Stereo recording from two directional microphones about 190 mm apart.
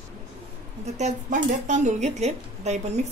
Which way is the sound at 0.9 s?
40° right (ahead or behind).